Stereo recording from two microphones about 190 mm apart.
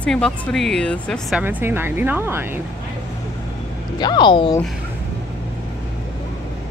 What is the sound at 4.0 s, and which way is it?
Speech, 25° left (ahead or behind).